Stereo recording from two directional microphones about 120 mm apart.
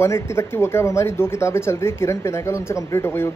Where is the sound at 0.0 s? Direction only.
25° left (ahead or behind).